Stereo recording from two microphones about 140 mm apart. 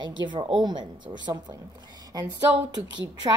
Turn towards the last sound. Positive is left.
turn(degrees=-30)  # may be behind; listen again after turning